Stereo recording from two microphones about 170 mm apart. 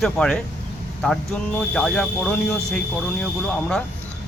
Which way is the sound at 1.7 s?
5° left (ahead or behind).